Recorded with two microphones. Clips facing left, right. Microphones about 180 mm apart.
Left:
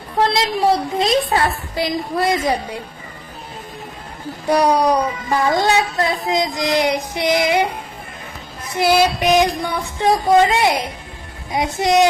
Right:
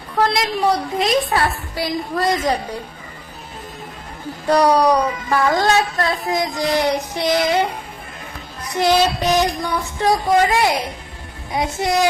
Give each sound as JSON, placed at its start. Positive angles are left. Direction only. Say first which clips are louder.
{"t": 0.2, "sound": "a woman's voice", "louder": "left 1 dB", "side_deg": 30}
{"t": 4.4, "sound": "speech", "louder": "right 1 dB", "side_deg": 10}
{"t": 8.8, "sound": "a woman's voice", "louder": "left 1 dB", "side_deg": 10}